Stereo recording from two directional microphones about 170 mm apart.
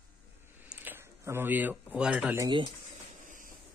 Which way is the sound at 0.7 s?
10° right (ahead or behind).